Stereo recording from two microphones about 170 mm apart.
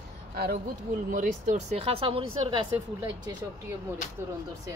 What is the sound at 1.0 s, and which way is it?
Speech, 50° right (ahead or behind).